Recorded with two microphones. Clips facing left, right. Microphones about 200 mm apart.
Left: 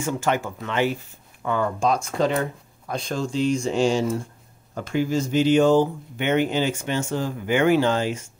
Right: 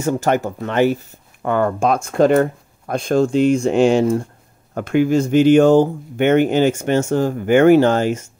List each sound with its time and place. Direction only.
0.0 s speech: 40° right (ahead or behind)
1.4 s speech: 60° right (ahead or behind)